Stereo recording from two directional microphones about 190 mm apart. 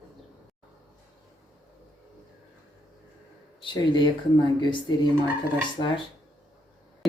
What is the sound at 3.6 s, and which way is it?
Speech, 25° left (ahead or behind).